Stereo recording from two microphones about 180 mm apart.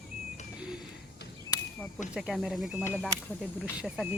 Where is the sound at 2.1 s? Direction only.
5° right (ahead or behind).